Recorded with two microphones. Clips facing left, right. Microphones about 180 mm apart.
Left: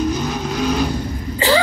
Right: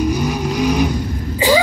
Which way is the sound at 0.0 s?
10° right (ahead or behind).